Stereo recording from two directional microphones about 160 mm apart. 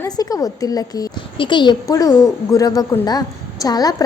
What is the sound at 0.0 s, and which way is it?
A woman's voice, 20° left (ahead or behind).